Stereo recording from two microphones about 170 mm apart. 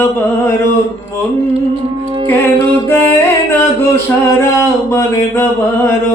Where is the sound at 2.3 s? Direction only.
15° left (ahead or behind).